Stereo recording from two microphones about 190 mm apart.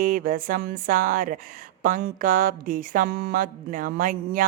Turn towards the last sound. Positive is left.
turn(degrees=-45)  # may be behind; listen again after turning